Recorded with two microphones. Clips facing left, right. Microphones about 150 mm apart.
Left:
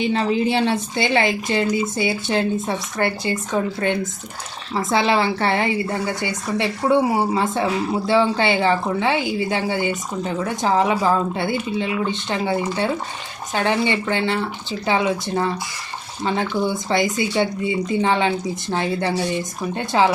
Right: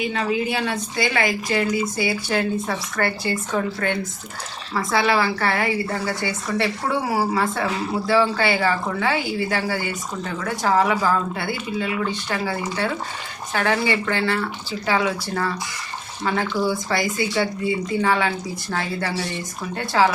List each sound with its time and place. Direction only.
0.0 s speech: 30° left (ahead or behind)